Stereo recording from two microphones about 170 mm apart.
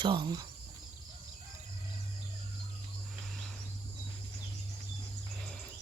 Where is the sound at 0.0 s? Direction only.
30° right (ahead or behind).